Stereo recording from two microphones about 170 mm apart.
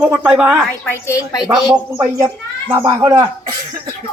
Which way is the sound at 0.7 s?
15° left (ahead or behind).